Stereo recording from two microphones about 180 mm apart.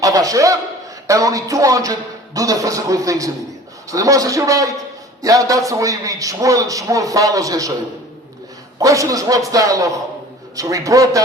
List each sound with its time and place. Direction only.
0.0 s a man's voice: 20° right (ahead or behind)
8.8 s a man's voice: 20° right (ahead or behind)